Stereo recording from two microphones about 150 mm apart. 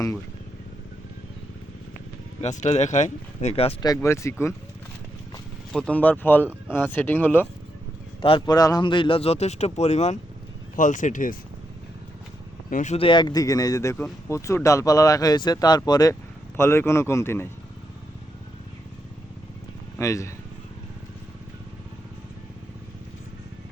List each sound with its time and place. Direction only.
2.4 s speech: 50° left (ahead or behind)
3.5 s speech: 40° left (ahead or behind)
3.8 s speech: 20° left (ahead or behind)
5.7 s a man's voice: 5° left (ahead or behind)
8.2 s speech: 35° left (ahead or behind)
10.8 s speech: 60° left (ahead or behind)
12.7 s speech: 50° left (ahead or behind)
13.0 s a man's voice: 30° left (ahead or behind); by 17.5 s 15° left (ahead or behind)
20.0 s speech: 20° left (ahead or behind)